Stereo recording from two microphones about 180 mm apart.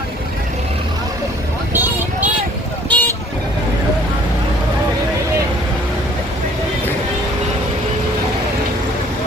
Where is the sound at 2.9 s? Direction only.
10° left (ahead or behind).